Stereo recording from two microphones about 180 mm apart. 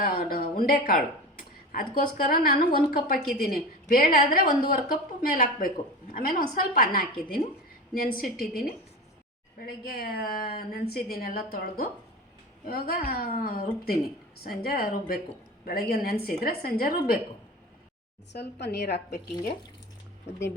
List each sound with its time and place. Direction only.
0.0 s a woman's voice: 55° left (ahead or behind)
9.6 s a woman's voice: 55° left (ahead or behind)
18.3 s a woman's voice: 65° left (ahead or behind)